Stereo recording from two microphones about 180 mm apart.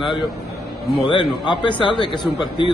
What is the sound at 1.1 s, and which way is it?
Speech, 25° left (ahead or behind).